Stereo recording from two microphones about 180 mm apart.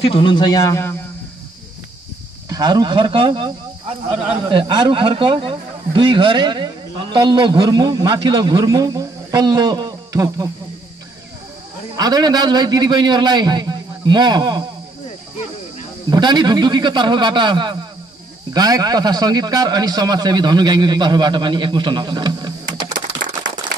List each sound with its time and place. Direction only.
0.0 s a man's voice: 30° left (ahead or behind)
2.5 s a man's voice: 20° right (ahead or behind)
12.0 s a man's voice: 20° right (ahead or behind)
16.1 s a man's voice: 25° right (ahead or behind)